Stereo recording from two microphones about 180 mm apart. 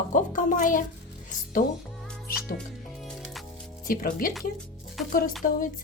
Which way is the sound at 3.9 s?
50° left (ahead or behind).